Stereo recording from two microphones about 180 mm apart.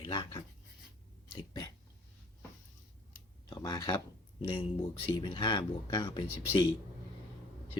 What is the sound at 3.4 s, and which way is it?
Speech, 20° left (ahead or behind).